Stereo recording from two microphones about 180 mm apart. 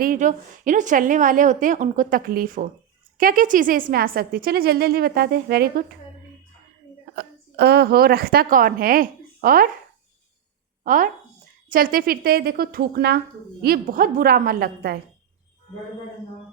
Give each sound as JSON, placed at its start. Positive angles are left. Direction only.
{"t": 0.0, "sound": "a woman's voice", "side_deg": -45}
{"t": 7.2, "sound": "a woman's voice", "side_deg": -65}
{"t": 10.8, "sound": "a woman's voice", "side_deg": -50}